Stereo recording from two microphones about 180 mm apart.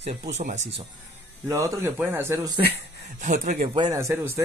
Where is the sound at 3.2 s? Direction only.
45° right (ahead or behind).